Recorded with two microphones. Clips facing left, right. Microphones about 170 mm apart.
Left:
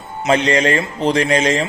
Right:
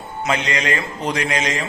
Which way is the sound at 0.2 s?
30° left (ahead or behind).